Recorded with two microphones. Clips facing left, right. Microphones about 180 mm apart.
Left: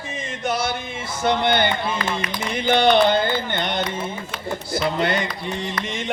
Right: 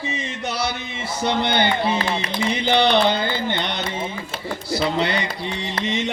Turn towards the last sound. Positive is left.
turn(degrees=50)  # may be behind; listen again after turning